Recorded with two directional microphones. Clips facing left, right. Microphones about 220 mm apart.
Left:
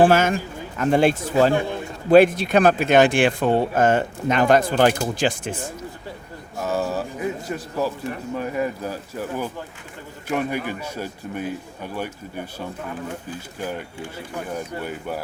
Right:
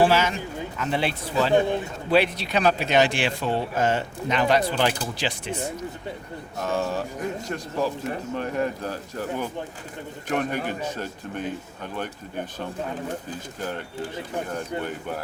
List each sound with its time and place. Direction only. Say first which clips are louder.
0.0 s speech: left 4 dB; 50° left (ahead or behind)
6.6 s a man's voice: left 2 dB; 5° left (ahead or behind)
13.6 s a man's voice: left 1 dB; 10° left (ahead or behind)